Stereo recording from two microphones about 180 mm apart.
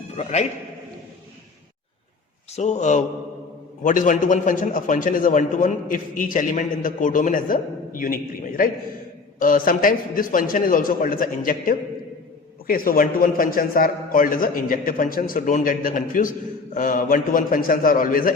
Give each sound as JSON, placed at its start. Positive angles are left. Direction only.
{"t": 0.2, "sound": "a man's voice", "side_deg": 35}
{"t": 2.6, "sound": "a man's voice", "side_deg": 40}